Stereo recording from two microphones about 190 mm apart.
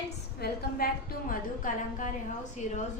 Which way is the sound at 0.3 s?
55° left (ahead or behind).